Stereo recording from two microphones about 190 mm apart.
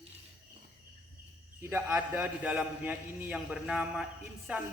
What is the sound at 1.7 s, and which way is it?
A man's voice, 10° right (ahead or behind).